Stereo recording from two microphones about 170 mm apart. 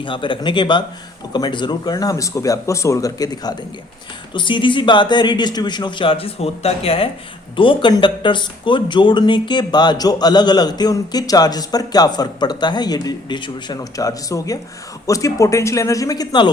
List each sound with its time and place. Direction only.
0.0 s speech: 30° left (ahead or behind)